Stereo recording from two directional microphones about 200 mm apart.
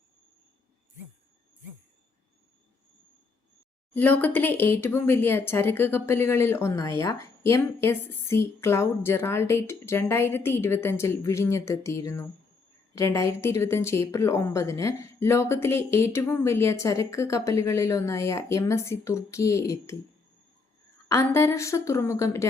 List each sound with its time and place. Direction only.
3.9 s a woman's voice: 10° left (ahead or behind)
21.1 s a woman's voice: 15° left (ahead or behind)